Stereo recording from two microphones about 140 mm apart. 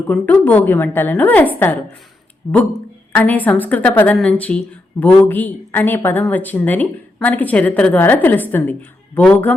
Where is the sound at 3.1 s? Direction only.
10° left (ahead or behind).